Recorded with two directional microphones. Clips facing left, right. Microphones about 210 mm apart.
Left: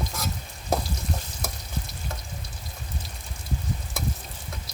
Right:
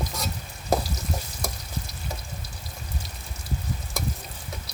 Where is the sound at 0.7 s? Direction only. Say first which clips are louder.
Right 2 dB; centre (ahead or behind).